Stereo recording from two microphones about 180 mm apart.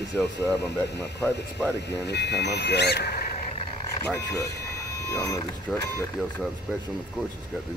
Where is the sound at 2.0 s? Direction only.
70° left (ahead or behind).